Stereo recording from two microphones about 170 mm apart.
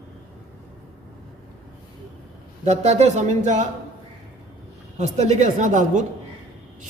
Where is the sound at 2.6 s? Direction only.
40° right (ahead or behind).